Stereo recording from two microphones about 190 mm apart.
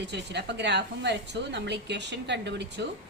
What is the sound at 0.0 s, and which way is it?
A woman's voice, 65° right (ahead or behind).